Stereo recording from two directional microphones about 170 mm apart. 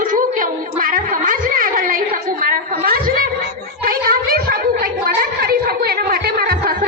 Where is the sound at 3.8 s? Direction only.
60° right (ahead or behind).